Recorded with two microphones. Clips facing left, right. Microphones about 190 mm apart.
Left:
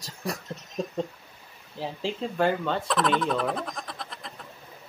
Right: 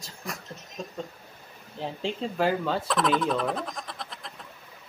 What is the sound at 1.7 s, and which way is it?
Speech, centre (ahead or behind).